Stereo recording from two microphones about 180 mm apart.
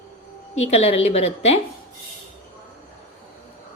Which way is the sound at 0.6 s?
35° left (ahead or behind).